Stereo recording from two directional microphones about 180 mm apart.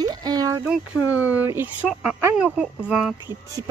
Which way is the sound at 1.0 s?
10° right (ahead or behind).